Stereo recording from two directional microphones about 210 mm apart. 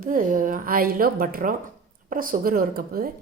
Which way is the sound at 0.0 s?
40° right (ahead or behind).